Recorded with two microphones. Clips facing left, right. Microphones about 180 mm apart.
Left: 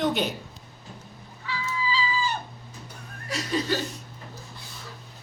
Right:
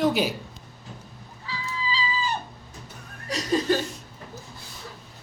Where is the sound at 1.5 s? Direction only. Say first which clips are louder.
Left 2 dB; 35° right (ahead or behind).